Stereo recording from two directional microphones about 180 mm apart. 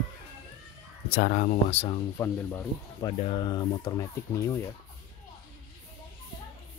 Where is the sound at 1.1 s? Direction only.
50° left (ahead or behind).